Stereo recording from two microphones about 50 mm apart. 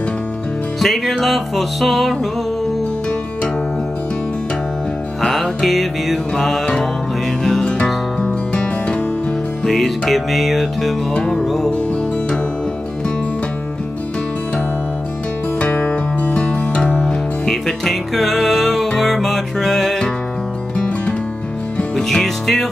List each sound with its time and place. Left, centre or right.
0.7 s music: centre
5.2 s music: centre
6.6 s music: centre
7.7 s music: left
9.7 s music: centre
11.4 s music: centre
11.7 s music: centre
15.6 s music: left; by 20.1 s centre
20.7 s music: centre
22.0 s music: centre